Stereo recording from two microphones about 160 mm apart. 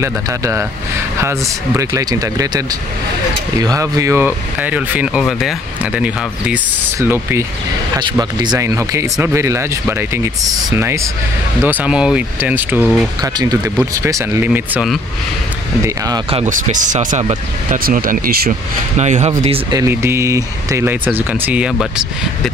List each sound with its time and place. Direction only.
0.0 s speech: 20° right (ahead or behind)
1.8 s speech: 20° right (ahead or behind)
8.2 s speech: 25° right (ahead or behind); by 13.0 s 10° right (ahead or behind)
13.2 s speech: 25° right (ahead or behind)
16.4 s speech: 55° right (ahead or behind); by 18.5 s 70° right (ahead or behind)
18.9 s speech: 45° right (ahead or behind)
19.7 s speech: 20° right (ahead or behind)